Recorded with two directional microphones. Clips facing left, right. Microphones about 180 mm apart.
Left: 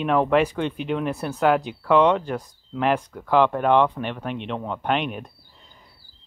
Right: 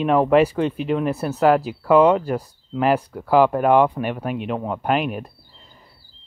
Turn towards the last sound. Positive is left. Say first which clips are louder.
# right 3 dB
turn(degrees=-5)  # may be behind; listen again after turning